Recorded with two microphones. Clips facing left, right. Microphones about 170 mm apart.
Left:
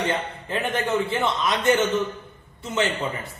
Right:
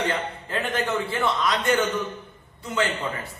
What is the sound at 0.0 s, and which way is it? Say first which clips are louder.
A man's voice: left 1 dB; 15° left (ahead or behind).